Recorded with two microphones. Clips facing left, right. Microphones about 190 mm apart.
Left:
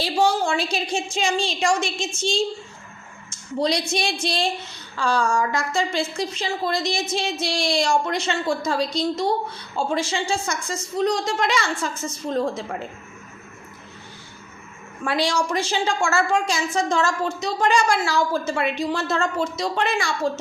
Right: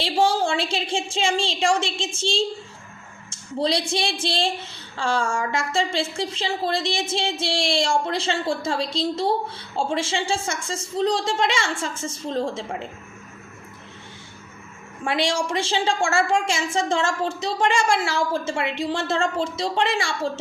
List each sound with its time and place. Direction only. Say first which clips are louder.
0.0 s a sound: even; 30° right (ahead or behind)
1.1 s a woman's voice: right 1 dB; 30° right (ahead or behind)
15.0 s a woman's voice: left 1 dB; 25° right (ahead or behind)